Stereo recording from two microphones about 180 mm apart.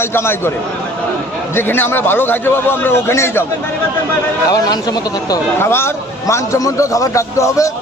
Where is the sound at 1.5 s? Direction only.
10° left (ahead or behind).